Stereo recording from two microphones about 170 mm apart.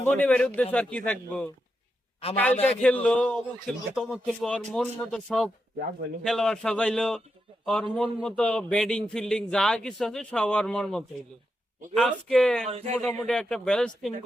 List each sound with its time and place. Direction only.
0.0 s a man's voice: 10° left (ahead or behind)
12.6 s speech: 40° right (ahead or behind)
13.0 s a man's voice: 5° left (ahead or behind)